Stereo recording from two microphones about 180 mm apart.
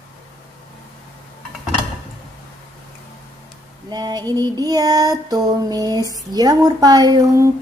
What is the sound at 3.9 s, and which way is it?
Female singing, 25° right (ahead or behind).